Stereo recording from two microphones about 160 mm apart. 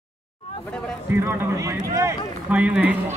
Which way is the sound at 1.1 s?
15° right (ahead or behind).